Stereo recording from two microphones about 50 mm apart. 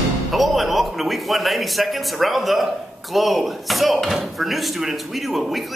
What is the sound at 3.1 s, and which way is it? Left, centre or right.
Speech, centre.